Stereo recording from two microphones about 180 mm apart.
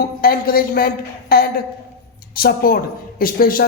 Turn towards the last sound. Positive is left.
turn(degrees=55)  # may be behind; listen again after turning